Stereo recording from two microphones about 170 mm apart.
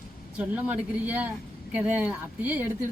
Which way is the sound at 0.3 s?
10° right (ahead or behind).